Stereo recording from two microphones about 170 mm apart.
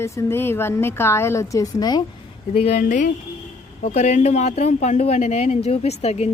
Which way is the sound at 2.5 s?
40° left (ahead or behind).